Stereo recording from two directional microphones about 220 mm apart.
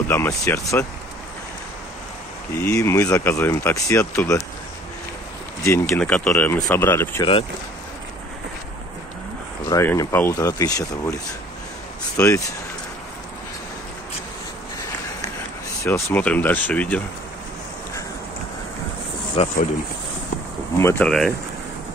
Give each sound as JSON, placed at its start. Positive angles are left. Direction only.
{"t": 0.1, "sound": "speech", "side_deg": 10}
{"t": 2.5, "sound": "speech", "side_deg": 15}
{"t": 5.7, "sound": "speech", "side_deg": 10}
{"t": 9.7, "sound": "speech", "side_deg": 15}
{"t": 12.2, "sound": "speech", "side_deg": 15}
{"t": 15.8, "sound": "speech", "side_deg": 10}
{"t": 19.3, "sound": "speech", "side_deg": 30}
{"t": 20.8, "sound": "speech", "side_deg": 5}